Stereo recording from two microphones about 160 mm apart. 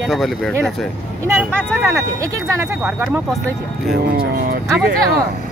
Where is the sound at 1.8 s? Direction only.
20° right (ahead or behind).